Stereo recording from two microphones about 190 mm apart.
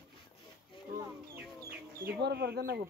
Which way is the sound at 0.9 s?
10° right (ahead or behind).